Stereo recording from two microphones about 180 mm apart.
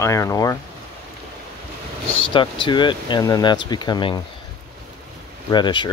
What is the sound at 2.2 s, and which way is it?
Speech, 30° left (ahead or behind).